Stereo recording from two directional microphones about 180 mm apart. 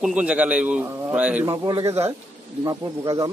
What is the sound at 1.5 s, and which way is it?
Speech, 25° right (ahead or behind).